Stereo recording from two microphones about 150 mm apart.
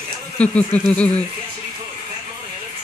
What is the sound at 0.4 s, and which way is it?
Speech, 10° left (ahead or behind).